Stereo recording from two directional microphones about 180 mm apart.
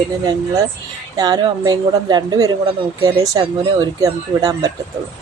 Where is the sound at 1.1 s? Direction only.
20° right (ahead or behind).